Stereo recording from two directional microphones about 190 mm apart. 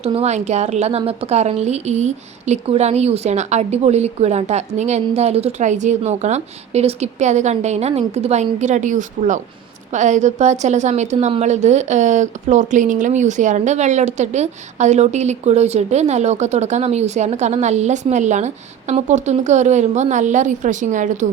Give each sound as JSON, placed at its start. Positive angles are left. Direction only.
{"t": 0.0, "sound": "a woman's voice", "side_deg": -35}